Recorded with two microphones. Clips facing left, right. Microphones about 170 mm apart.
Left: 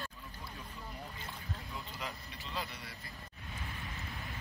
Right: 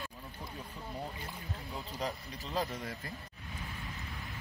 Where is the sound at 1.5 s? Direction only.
35° right (ahead or behind).